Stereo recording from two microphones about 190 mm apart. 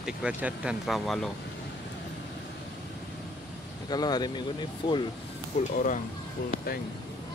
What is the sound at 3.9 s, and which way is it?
Speech, 20° left (ahead or behind).